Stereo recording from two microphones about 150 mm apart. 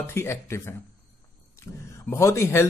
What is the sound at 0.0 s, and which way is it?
Speech, 15° left (ahead or behind).